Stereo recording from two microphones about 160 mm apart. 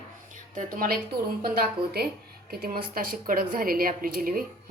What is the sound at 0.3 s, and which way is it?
A woman's voice, 60° right (ahead or behind).